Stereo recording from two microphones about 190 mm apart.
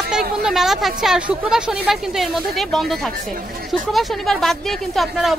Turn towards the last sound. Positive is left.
turn(degrees=0)  # may be behind; listen again after turning